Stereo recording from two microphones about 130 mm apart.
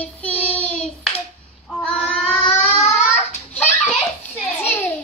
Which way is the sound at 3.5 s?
10° left (ahead or behind).